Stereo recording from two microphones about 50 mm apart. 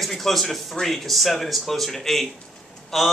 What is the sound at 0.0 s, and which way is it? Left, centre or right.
A man's voice, centre.